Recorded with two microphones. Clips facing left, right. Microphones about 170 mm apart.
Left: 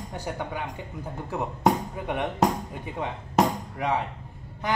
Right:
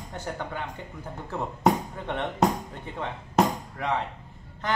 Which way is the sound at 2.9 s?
15° left (ahead or behind).